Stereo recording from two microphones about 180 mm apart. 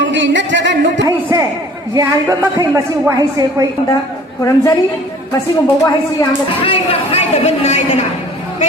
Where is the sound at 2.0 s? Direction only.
15° right (ahead or behind).